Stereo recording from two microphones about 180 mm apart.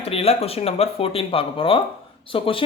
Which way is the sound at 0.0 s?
35° left (ahead or behind).